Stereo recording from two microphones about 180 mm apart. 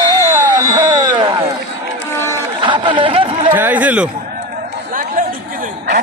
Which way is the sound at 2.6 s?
25° right (ahead or behind).